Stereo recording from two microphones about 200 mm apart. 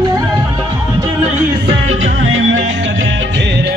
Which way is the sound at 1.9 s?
80° right.